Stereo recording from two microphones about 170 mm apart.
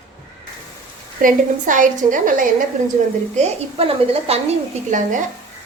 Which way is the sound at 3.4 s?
40° right (ahead or behind).